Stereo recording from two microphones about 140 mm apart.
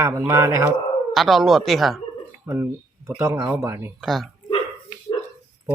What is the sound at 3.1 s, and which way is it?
Speech, 20° right (ahead or behind).